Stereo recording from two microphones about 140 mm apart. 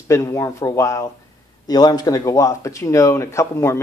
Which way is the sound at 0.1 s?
20° left (ahead or behind).